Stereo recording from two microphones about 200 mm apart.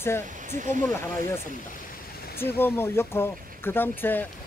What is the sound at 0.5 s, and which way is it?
Speech, 40° right (ahead or behind).